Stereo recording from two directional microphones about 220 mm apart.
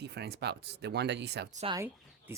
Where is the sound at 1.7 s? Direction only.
10° right (ahead or behind).